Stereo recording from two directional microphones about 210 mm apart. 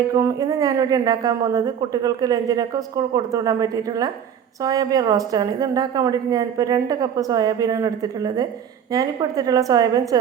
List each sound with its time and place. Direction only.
0.1 s a woman's voice: 15° right (ahead or behind)